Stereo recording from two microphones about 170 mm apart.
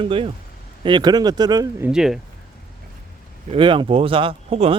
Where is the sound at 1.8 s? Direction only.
5° right (ahead or behind).